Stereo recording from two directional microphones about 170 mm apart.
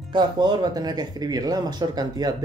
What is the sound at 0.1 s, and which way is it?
Speech, 25° right (ahead or behind).